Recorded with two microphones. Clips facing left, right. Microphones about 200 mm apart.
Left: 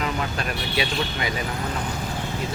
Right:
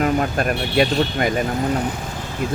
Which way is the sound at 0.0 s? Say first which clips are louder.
Right 8 dB; 50° right (ahead or behind).